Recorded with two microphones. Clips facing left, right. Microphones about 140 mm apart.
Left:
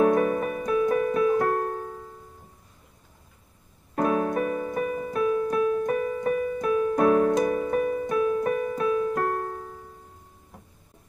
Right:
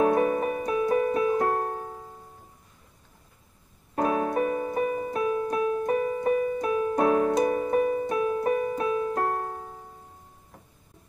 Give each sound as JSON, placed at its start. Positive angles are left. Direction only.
{"t": 0.0, "sound": "music", "side_deg": -35}
{"t": 3.9, "sound": "keyboard", "side_deg": -35}